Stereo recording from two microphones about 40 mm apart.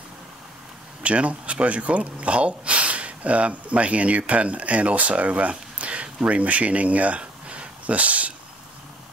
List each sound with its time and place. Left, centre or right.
1.0 s speech: right